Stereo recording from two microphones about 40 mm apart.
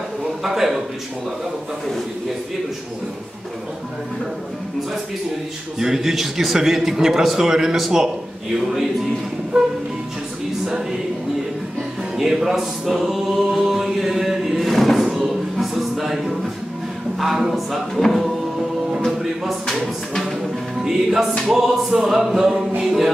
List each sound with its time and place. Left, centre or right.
0.4 s a man's voice: centre
5.8 s a man's voice: centre
10.6 s music: centre
12.2 s choir: centre
15.5 s a sound: centre
17.5 s a man's voice: centre
19.7 s a sound: centre
20.8 s a man's voice: centre